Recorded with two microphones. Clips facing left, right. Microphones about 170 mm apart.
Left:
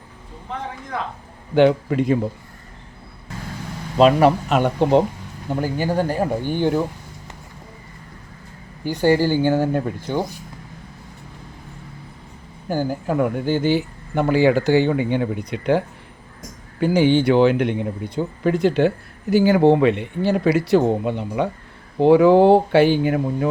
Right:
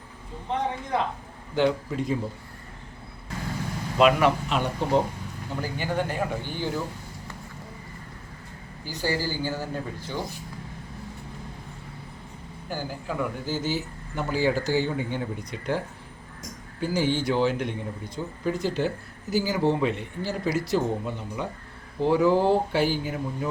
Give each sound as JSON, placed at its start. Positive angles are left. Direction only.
{"t": 1.5, "sound": "speech", "side_deg": 70}
{"t": 3.9, "sound": "a man's voice", "side_deg": 35}
{"t": 4.5, "sound": "speech", "side_deg": 65}
{"t": 5.5, "sound": "speech", "side_deg": 40}
{"t": 8.8, "sound": "speech", "side_deg": 60}
{"t": 12.6, "sound": "speech", "side_deg": 50}
{"t": 16.8, "sound": "speech", "side_deg": 65}